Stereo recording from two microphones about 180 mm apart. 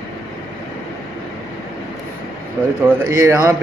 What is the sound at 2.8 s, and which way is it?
Speech, 10° right (ahead or behind).